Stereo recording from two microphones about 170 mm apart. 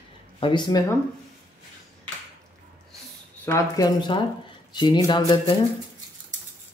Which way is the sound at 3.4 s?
20° left (ahead or behind).